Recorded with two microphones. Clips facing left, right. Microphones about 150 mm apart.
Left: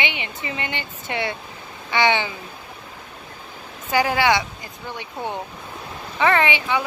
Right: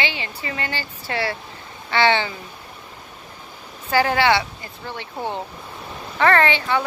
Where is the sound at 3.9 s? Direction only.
15° left (ahead or behind).